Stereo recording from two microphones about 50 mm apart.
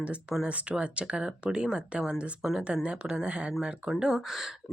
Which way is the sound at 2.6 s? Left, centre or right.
Right.